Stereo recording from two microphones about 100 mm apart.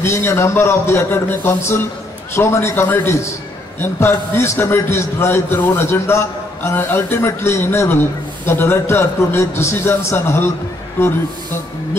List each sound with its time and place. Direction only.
0.0 s a man's voice: 25° left (ahead or behind)